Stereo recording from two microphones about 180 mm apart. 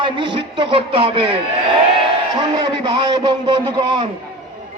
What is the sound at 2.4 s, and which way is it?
A man's voice, 25° right (ahead or behind).